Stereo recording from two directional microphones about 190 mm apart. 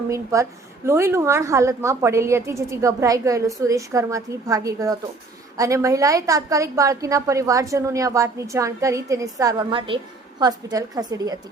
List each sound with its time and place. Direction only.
0.1 s a woman's voice: 15° right (ahead or behind)